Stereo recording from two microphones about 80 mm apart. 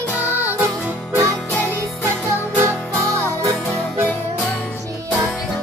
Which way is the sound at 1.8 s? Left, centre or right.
Right.